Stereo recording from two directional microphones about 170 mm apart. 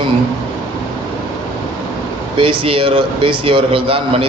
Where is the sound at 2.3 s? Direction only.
35° right (ahead or behind).